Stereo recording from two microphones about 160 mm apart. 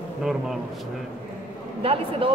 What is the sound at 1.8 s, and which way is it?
Speech, 35° right (ahead or behind).